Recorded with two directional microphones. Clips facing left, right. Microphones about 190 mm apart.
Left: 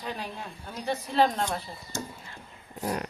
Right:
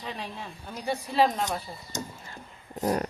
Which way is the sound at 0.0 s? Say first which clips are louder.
Left 1 dB; centre (ahead or behind).